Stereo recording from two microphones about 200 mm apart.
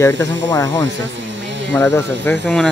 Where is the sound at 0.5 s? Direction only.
20° left (ahead or behind).